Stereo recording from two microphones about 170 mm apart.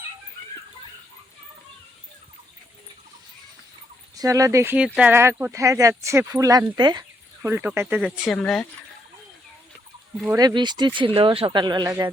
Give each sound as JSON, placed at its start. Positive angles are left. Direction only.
{"t": 4.1, "sound": "speech", "side_deg": -20}
{"t": 7.4, "sound": "speech", "side_deg": -10}
{"t": 8.0, "sound": "speech", "side_deg": 0}
{"t": 10.2, "sound": "speech", "side_deg": -20}